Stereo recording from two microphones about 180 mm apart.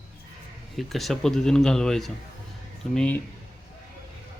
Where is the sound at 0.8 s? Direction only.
Centre (ahead or behind).